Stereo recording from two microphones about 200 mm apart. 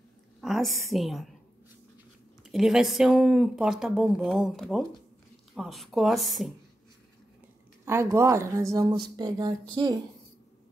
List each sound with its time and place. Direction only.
0.4 s a sound: centre (ahead or behind)
0.8 s speech: centre (ahead or behind)
2.4 s speech: centre (ahead or behind)
7.8 s speech: 15° right (ahead or behind)